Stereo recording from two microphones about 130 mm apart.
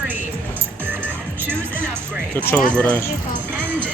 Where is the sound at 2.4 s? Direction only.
10° left (ahead or behind).